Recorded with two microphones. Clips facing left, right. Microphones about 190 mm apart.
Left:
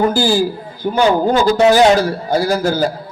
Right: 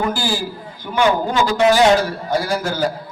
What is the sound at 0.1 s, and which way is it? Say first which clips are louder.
Speech: left 8 dB; 40° left (ahead or behind).